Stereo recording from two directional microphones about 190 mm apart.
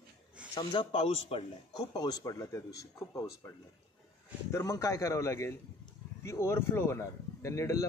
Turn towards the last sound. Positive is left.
turn(degrees=15)  # may be behind; listen again after turning